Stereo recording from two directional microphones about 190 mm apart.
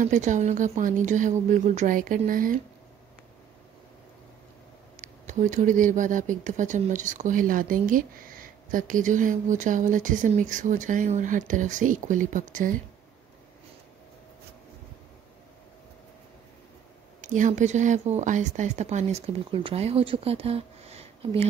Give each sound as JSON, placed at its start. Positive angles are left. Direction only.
{"t": 0.0, "sound": "speech", "side_deg": -40}
{"t": 4.9, "sound": "speech", "side_deg": -40}
{"t": 17.2, "sound": "speech", "side_deg": -40}